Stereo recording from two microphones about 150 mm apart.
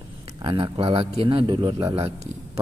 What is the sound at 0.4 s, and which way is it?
A man's voice, 30° right (ahead or behind).